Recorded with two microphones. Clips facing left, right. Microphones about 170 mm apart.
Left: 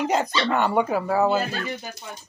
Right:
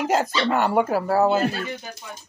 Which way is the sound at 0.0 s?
5° right (ahead or behind).